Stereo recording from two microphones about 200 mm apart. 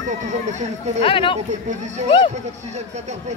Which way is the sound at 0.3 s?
35° right (ahead or behind).